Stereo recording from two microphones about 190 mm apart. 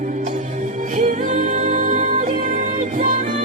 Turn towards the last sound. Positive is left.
turn(degrees=-45)  # may be behind; listen again after turning